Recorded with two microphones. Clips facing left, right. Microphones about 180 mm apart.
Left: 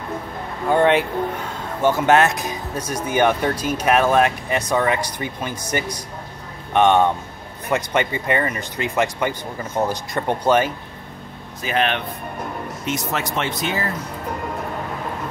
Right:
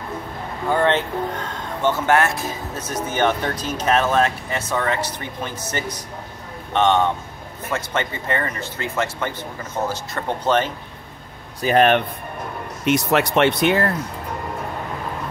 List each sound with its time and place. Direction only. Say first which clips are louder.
0.8 s speech: left 2 dB; 10° left (ahead or behind)
11.6 s speech: right 6 dB; 45° right (ahead or behind)
12.8 s speech: right 8 dB; 65° right (ahead or behind)